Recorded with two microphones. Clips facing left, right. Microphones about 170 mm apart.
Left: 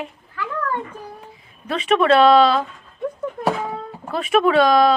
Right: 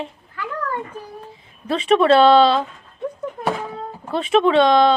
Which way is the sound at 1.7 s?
30° right (ahead or behind).